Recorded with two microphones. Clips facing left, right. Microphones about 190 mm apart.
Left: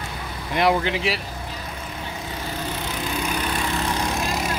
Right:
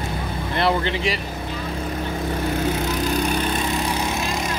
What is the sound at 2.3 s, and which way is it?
Lawn mower, 45° right (ahead or behind).